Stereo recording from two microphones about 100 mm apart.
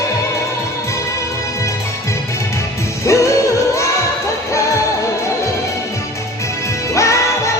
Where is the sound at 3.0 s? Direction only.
30° left (ahead or behind).